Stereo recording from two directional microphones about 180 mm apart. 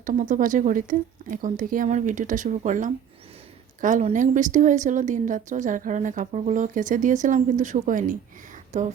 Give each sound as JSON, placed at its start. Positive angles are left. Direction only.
{"t": 0.0, "sound": "a woman's voice", "side_deg": -45}